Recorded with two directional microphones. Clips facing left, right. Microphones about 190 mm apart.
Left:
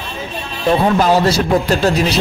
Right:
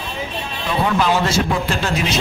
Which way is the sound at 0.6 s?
40° left (ahead or behind).